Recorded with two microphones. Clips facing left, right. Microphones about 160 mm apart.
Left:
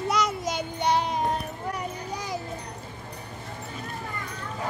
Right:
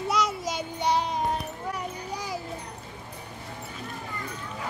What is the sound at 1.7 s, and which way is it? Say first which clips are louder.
Children playing: left 2 dB; 5° right (ahead or behind).